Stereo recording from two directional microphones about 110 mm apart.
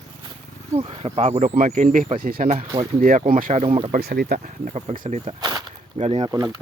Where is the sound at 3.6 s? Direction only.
55° right (ahead or behind).